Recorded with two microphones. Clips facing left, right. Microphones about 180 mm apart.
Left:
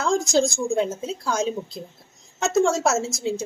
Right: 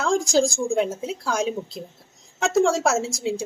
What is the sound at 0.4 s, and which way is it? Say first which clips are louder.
A woman's voice: even; 10° right (ahead or behind).